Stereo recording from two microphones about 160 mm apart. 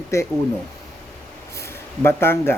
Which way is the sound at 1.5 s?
15° left (ahead or behind).